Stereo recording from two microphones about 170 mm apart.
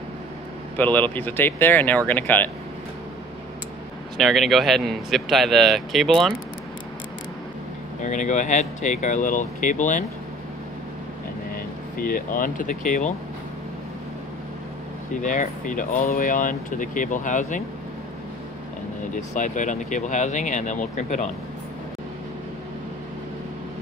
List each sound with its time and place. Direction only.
0.7 s speech: 10° left (ahead or behind)
4.2 s a man's voice: centre (ahead or behind)
8.0 s speech: 45° left (ahead or behind)
11.5 s speech: 55° left (ahead or behind)
15.2 s speech: 50° left (ahead or behind)
19.1 s speech: 45° left (ahead or behind)